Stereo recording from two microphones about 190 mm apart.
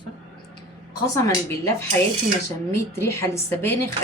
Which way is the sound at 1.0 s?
15° left (ahead or behind).